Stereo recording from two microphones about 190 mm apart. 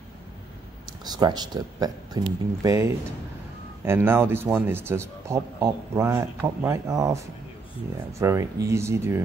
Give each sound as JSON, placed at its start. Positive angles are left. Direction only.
{"t": 1.0, "sound": "a man's voice", "side_deg": -20}